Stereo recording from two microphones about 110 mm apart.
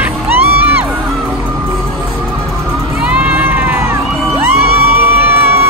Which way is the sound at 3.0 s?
10° right (ahead or behind).